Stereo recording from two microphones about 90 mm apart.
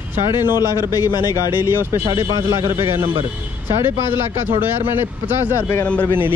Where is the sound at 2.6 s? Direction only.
25° right (ahead or behind).